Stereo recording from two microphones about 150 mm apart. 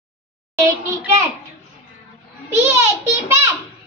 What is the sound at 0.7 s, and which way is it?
Speech, 20° right (ahead or behind).